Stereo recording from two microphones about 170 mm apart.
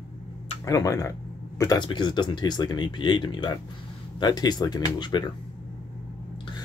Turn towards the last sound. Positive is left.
turn(degrees=25)  # may be behind; listen again after turning